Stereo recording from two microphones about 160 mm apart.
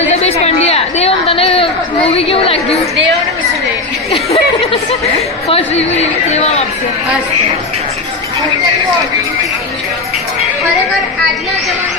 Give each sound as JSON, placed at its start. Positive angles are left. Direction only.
{"t": 0.1, "sound": "chatter", "side_deg": 40}
{"t": 4.1, "sound": "speech", "side_deg": 40}